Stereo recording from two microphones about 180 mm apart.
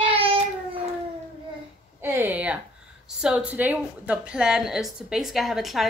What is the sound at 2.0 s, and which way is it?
A woman's voice, 10° right (ahead or behind).